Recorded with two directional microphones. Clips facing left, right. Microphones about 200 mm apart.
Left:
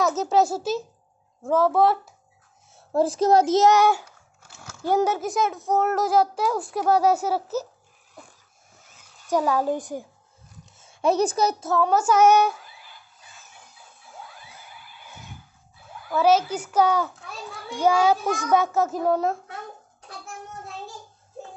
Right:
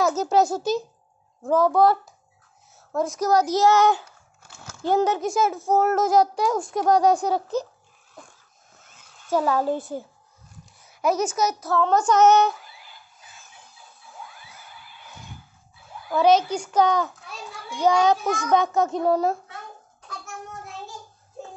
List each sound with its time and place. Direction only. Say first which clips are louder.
0.0 s speech: right 1 dB; centre (ahead or behind)
2.9 s a child's voice: left 3 dB; 30° left (ahead or behind); by 7.6 s 5° left (ahead or behind)
8.9 s speech: even; 10° left (ahead or behind)
10.8 s a child's voice: left 2 dB; 30° left (ahead or behind)
11.7 s a child's voice: right 1 dB; 10° left (ahead or behind)
16.1 s a child's voice: right 1 dB; 5° left (ahead or behind)